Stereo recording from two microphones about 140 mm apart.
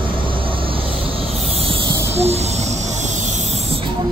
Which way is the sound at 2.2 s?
50° right (ahead or behind).